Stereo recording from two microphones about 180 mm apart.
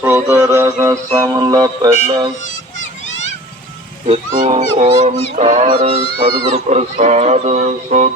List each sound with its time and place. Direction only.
0.0 s a sound: 10° right (ahead or behind)
2.0 s speech: 25° right (ahead or behind)
4.0 s speech: 40° right (ahead or behind)